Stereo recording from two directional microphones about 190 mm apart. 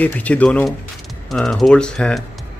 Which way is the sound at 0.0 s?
5° left (ahead or behind).